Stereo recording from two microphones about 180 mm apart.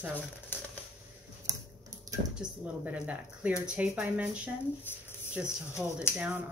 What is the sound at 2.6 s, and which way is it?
Speech, 10° right (ahead or behind).